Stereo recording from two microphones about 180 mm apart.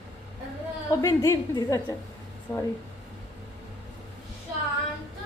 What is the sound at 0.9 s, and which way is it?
A woman's voice, 15° left (ahead or behind).